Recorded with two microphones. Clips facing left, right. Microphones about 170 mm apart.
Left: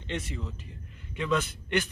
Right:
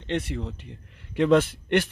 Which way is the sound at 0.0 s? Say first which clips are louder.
Right 7 dB; 65° right (ahead or behind).